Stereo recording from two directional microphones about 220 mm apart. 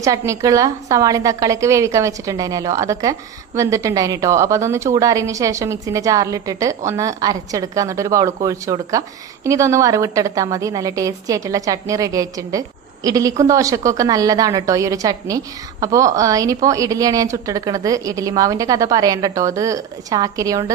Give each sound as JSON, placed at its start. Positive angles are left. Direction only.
{"t": 0.0, "sound": "a woman's voice", "side_deg": -15}